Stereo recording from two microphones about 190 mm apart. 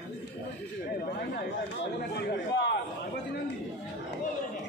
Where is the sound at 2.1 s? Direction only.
60° left (ahead or behind).